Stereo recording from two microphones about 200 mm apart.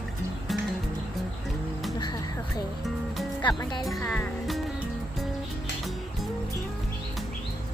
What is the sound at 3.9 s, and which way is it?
Speech, 5° left (ahead or behind).